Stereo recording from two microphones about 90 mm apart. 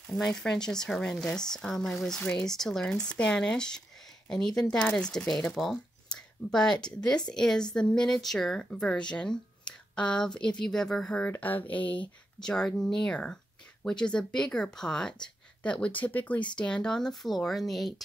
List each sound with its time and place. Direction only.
0.1 s speech: 10° left (ahead or behind)